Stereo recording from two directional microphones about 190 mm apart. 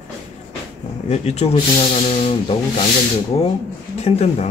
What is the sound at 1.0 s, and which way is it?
Speech, 35° left (ahead or behind).